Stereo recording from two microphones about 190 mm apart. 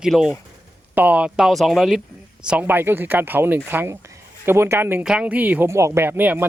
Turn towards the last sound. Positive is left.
turn(degrees=-10)  # may be behind; listen again after turning